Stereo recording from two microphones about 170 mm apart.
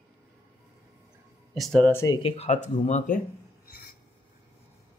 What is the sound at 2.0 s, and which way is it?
Speech, 20° left (ahead or behind).